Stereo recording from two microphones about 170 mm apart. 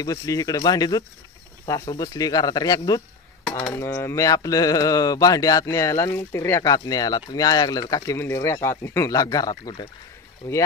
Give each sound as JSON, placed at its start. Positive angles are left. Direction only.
{"t": 0.0, "sound": "speech", "side_deg": 20}